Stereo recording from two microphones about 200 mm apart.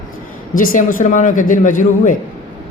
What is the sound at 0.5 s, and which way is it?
A man's voice, 45° left (ahead or behind).